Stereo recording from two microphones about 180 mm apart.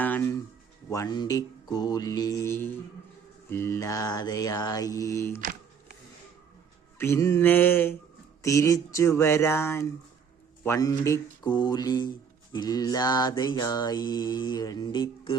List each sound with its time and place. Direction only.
0.0 s music: 10° left (ahead or behind)
0.9 s mantra: 20° left (ahead or behind)
5.4 s a sound: 50° right (ahead or behind)
7.0 s speech: 15° left (ahead or behind)
10.6 s mantra: 15° left (ahead or behind)